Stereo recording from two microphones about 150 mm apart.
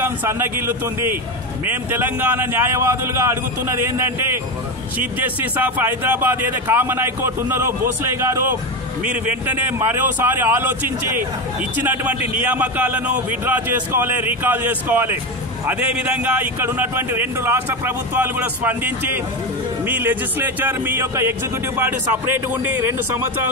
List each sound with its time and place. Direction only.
0.2 s speech: 15° right (ahead or behind)
4.9 s speech: 10° right (ahead or behind)